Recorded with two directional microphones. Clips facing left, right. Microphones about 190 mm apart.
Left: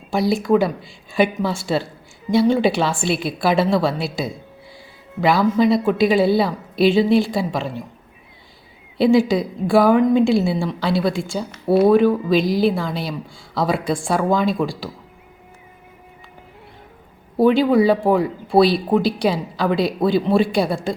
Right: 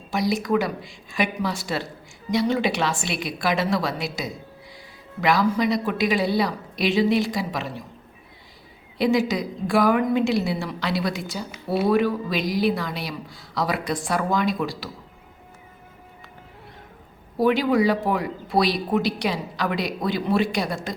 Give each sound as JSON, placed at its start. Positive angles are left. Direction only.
{"t": 0.1, "sound": "a woman's voice", "side_deg": 30}
{"t": 9.0, "sound": "speech", "side_deg": 30}
{"t": 11.7, "sound": "speech", "side_deg": 55}
{"t": 12.4, "sound": "speech", "side_deg": 30}
{"t": 17.4, "sound": "speech", "side_deg": 30}